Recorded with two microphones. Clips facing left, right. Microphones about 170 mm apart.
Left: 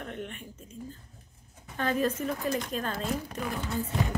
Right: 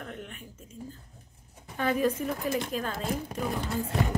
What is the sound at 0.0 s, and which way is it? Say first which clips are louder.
Speech: left 2 dB; 5° right (ahead or behind).